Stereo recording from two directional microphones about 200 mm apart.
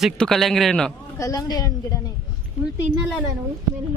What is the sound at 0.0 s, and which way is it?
Speech, centre (ahead or behind).